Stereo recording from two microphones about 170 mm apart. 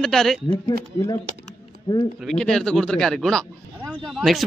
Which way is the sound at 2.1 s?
Centre (ahead or behind).